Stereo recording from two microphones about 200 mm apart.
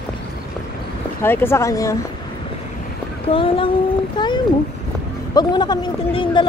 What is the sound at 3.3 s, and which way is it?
Speech, 25° left (ahead or behind).